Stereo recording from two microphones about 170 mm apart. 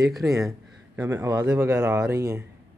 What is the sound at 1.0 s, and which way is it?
Speech, 15° right (ahead or behind).